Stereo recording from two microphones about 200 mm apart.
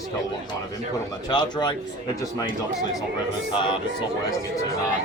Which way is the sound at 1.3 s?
20° left (ahead or behind).